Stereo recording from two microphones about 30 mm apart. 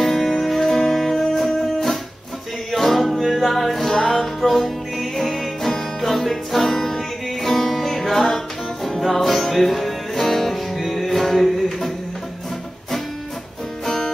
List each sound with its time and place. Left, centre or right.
0.1 s music: centre
0.4 s music: centre
4.4 s music: centre
13.8 s music: centre